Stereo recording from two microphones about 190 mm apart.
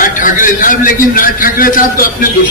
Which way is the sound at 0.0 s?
45° left (ahead or behind).